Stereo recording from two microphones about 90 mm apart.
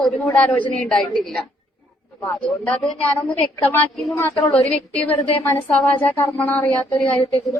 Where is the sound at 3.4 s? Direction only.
25° left (ahead or behind).